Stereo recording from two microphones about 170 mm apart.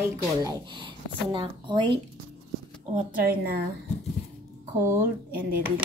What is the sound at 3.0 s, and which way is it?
Speech, 55° right (ahead or behind).